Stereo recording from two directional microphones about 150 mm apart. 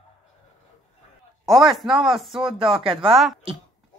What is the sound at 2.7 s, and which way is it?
Speech, 35° right (ahead or behind).